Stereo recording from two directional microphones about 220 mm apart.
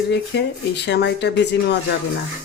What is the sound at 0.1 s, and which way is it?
Speech, 50° left (ahead or behind).